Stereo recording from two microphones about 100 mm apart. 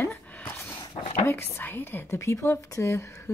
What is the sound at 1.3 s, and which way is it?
A woman's voice, 25° left (ahead or behind).